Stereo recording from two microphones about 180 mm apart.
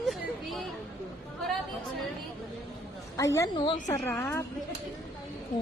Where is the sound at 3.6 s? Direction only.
25° left (ahead or behind).